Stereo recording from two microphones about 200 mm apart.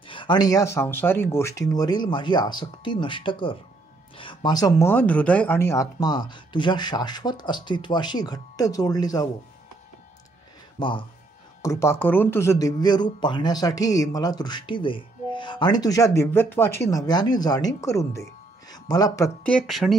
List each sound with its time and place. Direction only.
0.0 s speech: 25° left (ahead or behind)
10.8 s speech: 25° left (ahead or behind)
11.6 s speech: 15° left (ahead or behind)